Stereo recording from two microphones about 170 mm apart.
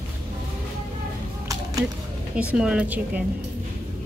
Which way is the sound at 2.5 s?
5° right (ahead or behind).